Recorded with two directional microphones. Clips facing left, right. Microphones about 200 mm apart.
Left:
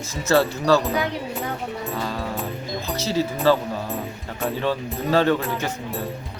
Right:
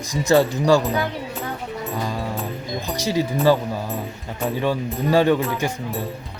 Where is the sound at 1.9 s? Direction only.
15° right (ahead or behind).